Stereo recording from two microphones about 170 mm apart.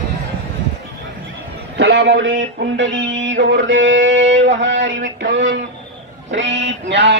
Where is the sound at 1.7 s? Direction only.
90° right.